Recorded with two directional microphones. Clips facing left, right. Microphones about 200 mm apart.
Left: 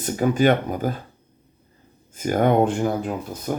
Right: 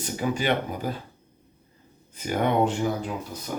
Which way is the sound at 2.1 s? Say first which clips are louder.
Left 5 dB; 45° left (ahead or behind).